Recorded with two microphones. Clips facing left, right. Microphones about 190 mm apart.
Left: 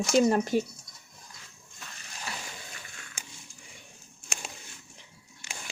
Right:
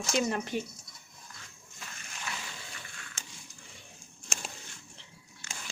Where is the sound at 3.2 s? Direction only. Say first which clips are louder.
Left 3 dB; 10° left (ahead or behind).